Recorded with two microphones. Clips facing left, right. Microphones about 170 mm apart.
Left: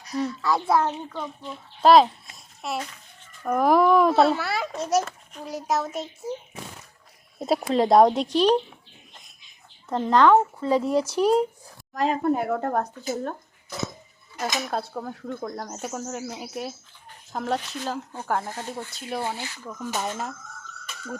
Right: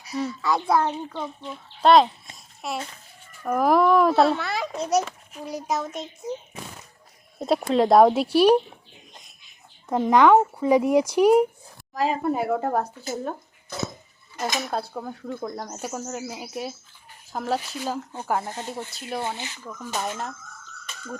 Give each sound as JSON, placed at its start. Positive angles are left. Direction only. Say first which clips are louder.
{"t": 0.0, "sound": "a child's voice", "louder": "left 1 dB", "side_deg": -5}
{"t": 7.3, "sound": "a child's voice", "louder": "right 1 dB", "side_deg": 0}
{"t": 9.9, "sound": "a child's voice", "louder": "right 1 dB", "side_deg": -10}
{"t": 14.4, "sound": "a child's voice", "louder": "right 1 dB", "side_deg": 0}
{"t": 18.5, "sound": "speech", "louder": "right 1 dB", "side_deg": -20}
{"t": 18.9, "sound": "a child's voice", "louder": "left 1 dB", "side_deg": 0}